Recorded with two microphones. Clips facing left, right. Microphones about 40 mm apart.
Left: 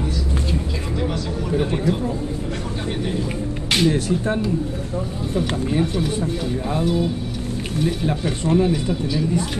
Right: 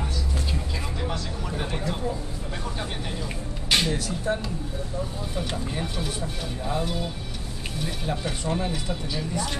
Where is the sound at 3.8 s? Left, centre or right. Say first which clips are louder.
Left 8 dB; left.